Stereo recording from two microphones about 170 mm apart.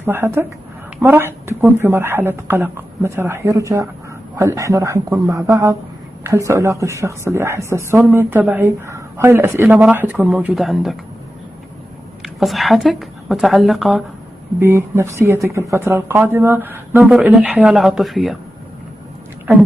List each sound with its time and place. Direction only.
0.0 s a man's voice: 15° right (ahead or behind)
12.2 s speech: centre (ahead or behind)
14.6 s speech: 15° right (ahead or behind); by 18.4 s centre (ahead or behind)